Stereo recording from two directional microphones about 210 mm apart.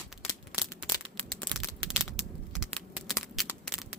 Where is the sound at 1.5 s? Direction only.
20° left (ahead or behind).